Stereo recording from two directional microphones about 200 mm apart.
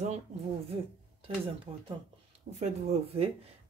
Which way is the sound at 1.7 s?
30° right (ahead or behind).